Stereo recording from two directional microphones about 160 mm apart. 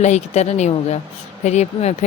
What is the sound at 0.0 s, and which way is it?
A woman's voice, 45° left (ahead or behind).